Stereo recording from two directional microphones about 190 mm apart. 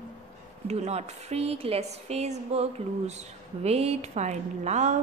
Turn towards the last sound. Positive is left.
turn(degrees=-40)  # may be behind; listen again after turning